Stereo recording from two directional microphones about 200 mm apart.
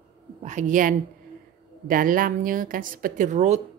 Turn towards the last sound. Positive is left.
turn(degrees=-35)  # may be behind; listen again after turning